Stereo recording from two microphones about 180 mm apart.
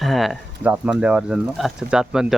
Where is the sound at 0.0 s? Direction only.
Centre (ahead or behind).